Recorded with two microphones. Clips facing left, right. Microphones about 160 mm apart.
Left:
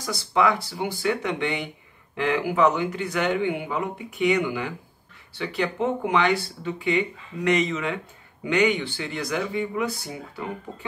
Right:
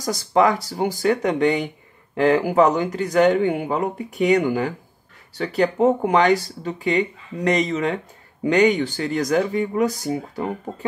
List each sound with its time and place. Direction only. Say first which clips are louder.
0.0 s speech: right 4 dB; 40° right (ahead or behind)